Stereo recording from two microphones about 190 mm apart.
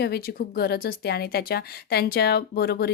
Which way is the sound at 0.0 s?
55° left (ahead or behind).